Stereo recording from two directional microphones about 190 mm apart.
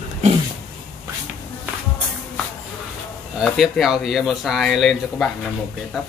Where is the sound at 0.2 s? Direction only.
35° right (ahead or behind).